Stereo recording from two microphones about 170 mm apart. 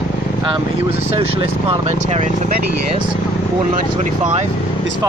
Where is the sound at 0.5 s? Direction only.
35° right (ahead or behind).